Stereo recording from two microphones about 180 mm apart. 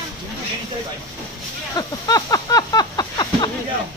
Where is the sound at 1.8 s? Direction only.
20° left (ahead or behind).